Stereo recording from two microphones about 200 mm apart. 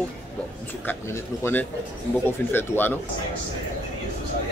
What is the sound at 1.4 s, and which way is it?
Speech, 10° left (ahead or behind).